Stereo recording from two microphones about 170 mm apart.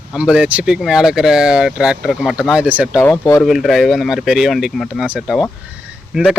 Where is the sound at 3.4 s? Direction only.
Centre (ahead or behind).